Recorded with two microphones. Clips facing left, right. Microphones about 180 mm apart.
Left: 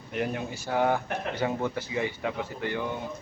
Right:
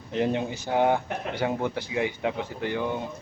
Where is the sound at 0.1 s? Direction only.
25° right (ahead or behind).